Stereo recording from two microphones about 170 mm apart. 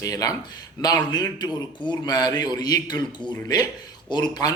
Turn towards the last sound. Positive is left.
turn(degrees=25)  # may be behind; listen again after turning